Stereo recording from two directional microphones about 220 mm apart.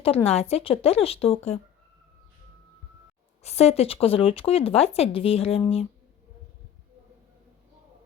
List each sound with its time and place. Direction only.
0.0 s speech: 25° left (ahead or behind)
3.4 s speech: 30° left (ahead or behind)